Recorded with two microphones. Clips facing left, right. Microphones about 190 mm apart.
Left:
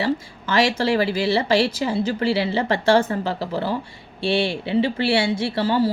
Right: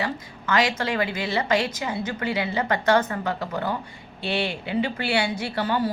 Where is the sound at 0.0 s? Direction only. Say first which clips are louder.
Left 6 dB; 30° left (ahead or behind).